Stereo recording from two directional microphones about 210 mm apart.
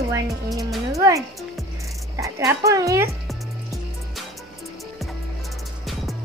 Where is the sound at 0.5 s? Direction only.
Centre (ahead or behind).